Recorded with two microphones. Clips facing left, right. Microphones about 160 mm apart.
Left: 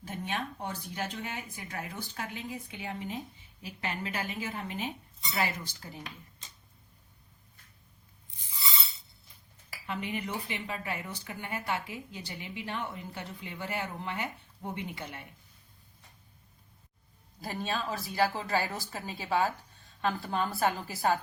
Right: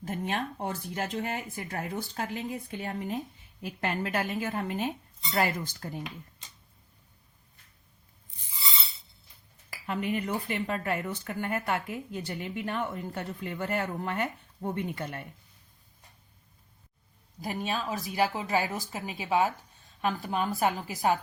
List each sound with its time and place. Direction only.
0.0 s a sound: 50° right (ahead or behind)
0.5 s speech: 45° right (ahead or behind)
3.6 s speech: 50° right (ahead or behind)
9.6 s speech: 50° right (ahead or behind)
17.4 s a woman's voice: 15° right (ahead or behind)